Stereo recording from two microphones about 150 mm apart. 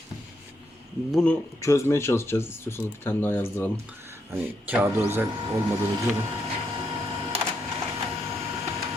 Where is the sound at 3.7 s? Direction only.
15° right (ahead or behind).